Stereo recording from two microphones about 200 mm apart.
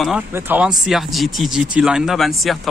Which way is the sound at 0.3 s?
10° right (ahead or behind).